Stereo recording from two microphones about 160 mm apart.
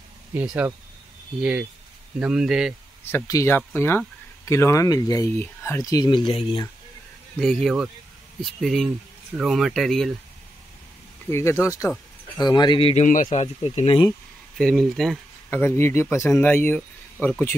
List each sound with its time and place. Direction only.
0.3 s speech: 10° right (ahead or behind)
3.1 s speech: 15° left (ahead or behind); by 6.6 s 35° left (ahead or behind)
7.3 s speech: 5° left (ahead or behind)
11.2 s speech: 15° left (ahead or behind); by 13.0 s 35° left (ahead or behind)
13.0 s a man's voice: 55° left (ahead or behind)
13.3 s speech: 40° left (ahead or behind)
14.6 s speech: centre (ahead or behind)
15.5 s speech: 15° left (ahead or behind)